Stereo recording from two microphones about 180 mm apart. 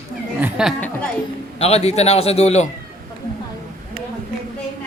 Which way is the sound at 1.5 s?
35° left (ahead or behind).